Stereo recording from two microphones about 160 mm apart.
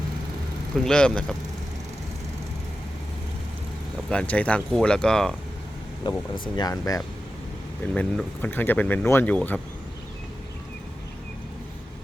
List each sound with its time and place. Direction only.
0.9 s speech: 5° left (ahead or behind)
4.1 s speech: 10° left (ahead or behind)
6.0 s speech: 25° left (ahead or behind)
7.9 s speech: 10° left (ahead or behind)